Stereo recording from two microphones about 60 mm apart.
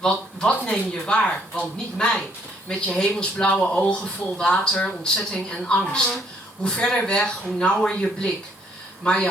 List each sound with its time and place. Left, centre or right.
0.0 s speech: centre